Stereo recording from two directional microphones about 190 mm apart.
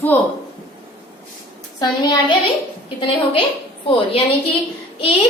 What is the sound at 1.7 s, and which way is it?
Speech, 20° left (ahead or behind).